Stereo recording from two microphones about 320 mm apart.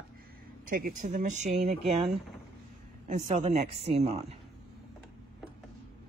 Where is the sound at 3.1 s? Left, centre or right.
Right.